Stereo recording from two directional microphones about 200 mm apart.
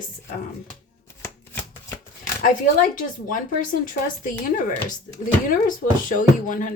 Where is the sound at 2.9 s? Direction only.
45° left (ahead or behind).